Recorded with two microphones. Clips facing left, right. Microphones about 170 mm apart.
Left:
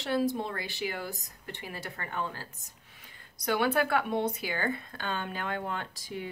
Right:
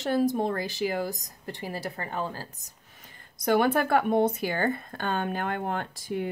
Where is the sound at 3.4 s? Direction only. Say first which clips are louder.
Right 4 dB; 50° right (ahead or behind).